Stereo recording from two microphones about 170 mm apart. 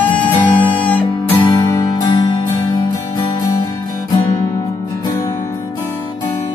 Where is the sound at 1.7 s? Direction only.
25° left (ahead or behind).